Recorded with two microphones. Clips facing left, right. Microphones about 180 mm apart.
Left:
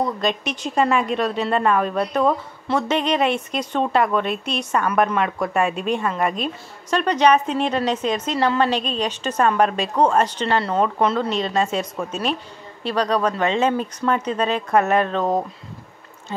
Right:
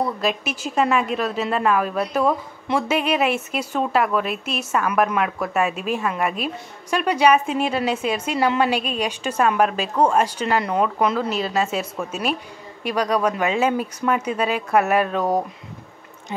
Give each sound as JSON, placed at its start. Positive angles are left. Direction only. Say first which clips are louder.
{"t": 0.2, "sound": "a woman's voice", "louder": "left 1 dB", "side_deg": -5}